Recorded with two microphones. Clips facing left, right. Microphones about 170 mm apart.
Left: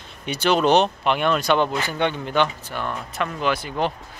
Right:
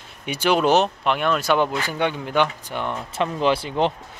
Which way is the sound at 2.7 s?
20° right (ahead or behind).